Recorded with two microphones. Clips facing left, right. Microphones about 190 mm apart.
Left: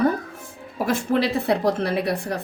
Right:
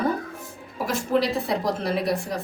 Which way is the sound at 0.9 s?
60° left (ahead or behind).